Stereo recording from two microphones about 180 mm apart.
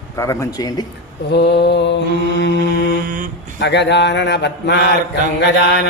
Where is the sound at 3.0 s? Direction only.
50° right (ahead or behind).